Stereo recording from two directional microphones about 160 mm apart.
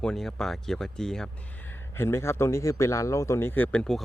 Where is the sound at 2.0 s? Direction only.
15° left (ahead or behind).